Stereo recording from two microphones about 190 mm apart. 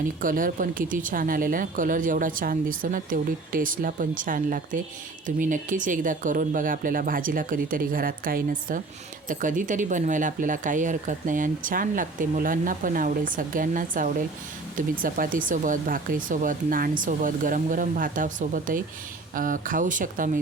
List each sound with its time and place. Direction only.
0.2 s speech: 45° right (ahead or behind)